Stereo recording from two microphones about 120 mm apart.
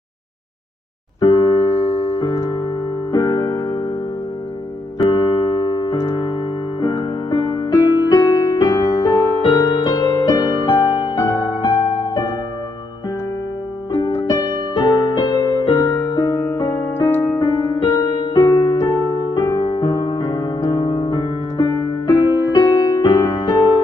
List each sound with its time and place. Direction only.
1.2 s music: 40° left (ahead or behind)
3.1 s music: 35° left (ahead or behind)
5.1 s music: 35° left (ahead or behind)
7.0 s music: 50° left (ahead or behind)
7.7 s music: 35° left (ahead or behind)
11.1 s music: 25° left (ahead or behind)
13.9 s music: 30° left (ahead or behind)